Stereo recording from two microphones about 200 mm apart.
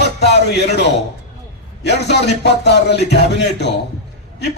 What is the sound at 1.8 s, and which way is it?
Speech, 55° left (ahead or behind).